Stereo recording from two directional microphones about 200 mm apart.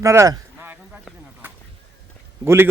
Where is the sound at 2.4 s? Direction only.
10° right (ahead or behind).